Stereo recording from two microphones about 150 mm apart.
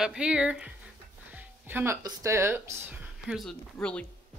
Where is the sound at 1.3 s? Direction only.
10° right (ahead or behind).